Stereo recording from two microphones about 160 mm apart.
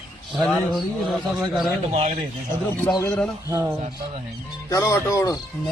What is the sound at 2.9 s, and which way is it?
Speech, 20° left (ahead or behind).